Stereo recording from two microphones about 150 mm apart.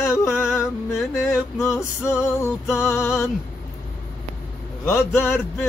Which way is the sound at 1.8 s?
20° left (ahead or behind).